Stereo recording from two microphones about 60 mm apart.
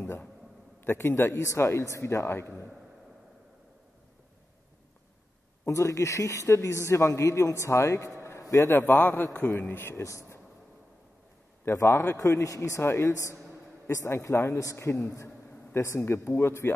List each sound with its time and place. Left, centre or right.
0.8 s a man's voice: left
5.7 s a man's voice: left
8.4 s a sound: left
8.7 s a man's voice: left
9.9 s speech: left
11.6 s a man's voice: left
12.8 s a man's voice: left
13.1 s a man's voice: left